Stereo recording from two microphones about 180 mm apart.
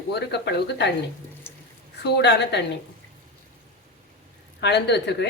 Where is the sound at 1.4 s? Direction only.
10° left (ahead or behind).